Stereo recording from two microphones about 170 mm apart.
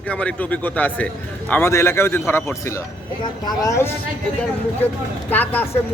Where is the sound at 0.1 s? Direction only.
5° left (ahead or behind).